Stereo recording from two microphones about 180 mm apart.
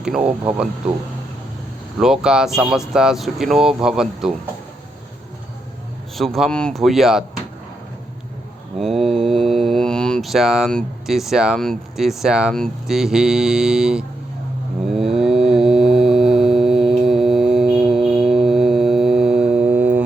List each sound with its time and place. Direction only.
0.0 s speech: 5° right (ahead or behind)
2.0 s speech: 5° right (ahead or behind)
6.1 s speech: centre (ahead or behind)
8.8 s speech: centre (ahead or behind)
14.8 s a sound: centre (ahead or behind)